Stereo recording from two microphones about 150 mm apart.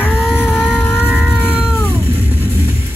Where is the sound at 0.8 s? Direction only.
15° left (ahead or behind).